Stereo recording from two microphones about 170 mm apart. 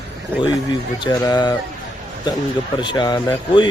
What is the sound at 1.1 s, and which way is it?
Speech, 25° left (ahead or behind).